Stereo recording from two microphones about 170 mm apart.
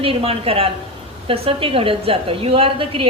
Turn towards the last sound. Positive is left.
turn(degrees=-35)  # may be behind; listen again after turning